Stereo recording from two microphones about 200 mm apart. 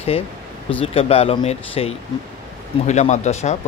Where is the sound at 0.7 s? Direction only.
30° left (ahead or behind).